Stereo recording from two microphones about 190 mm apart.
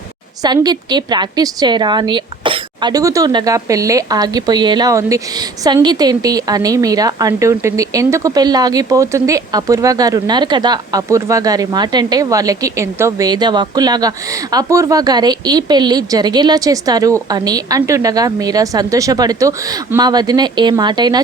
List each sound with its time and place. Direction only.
0.4 s a woman's voice: 20° right (ahead or behind)